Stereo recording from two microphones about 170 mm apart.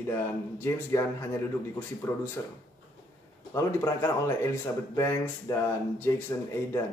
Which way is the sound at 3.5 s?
15° left (ahead or behind).